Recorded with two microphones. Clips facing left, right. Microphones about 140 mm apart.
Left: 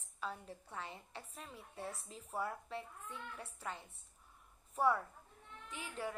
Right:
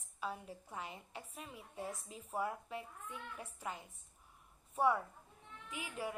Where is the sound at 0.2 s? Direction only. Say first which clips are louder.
Right 2 dB; 10° right (ahead or behind).